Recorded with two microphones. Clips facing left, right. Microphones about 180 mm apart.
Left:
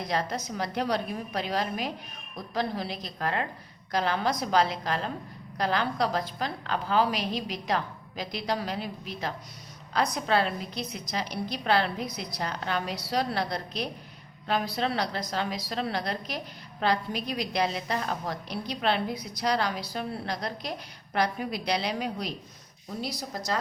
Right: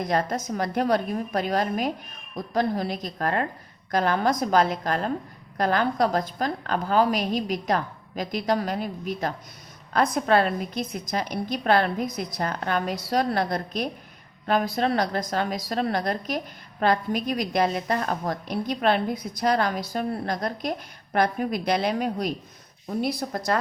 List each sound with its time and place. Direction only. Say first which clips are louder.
0.0 s a woman's voice: right 5 dB; 50° right (ahead or behind)